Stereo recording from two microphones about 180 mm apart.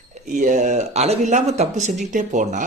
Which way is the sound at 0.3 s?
45° right (ahead or behind).